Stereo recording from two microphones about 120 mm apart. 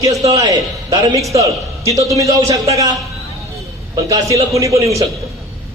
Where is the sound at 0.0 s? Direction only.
30° right (ahead or behind).